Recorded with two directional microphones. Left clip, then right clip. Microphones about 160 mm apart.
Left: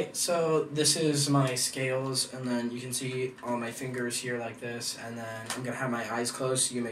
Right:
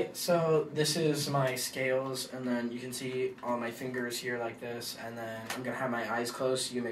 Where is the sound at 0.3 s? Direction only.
15° right (ahead or behind).